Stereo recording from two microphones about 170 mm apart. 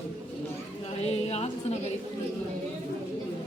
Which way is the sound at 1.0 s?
40° left (ahead or behind).